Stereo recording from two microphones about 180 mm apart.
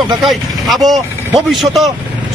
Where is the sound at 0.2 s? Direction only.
Centre (ahead or behind).